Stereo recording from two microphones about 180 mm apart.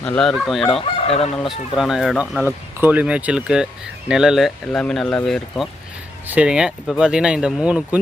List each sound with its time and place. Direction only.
0.0 s speech: 5° left (ahead or behind)
0.8 s fowl: 35° left (ahead or behind)
1.4 s speech: centre (ahead or behind)